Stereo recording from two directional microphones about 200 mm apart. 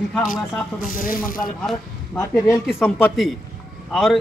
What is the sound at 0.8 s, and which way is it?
Speech, 45° left (ahead or behind).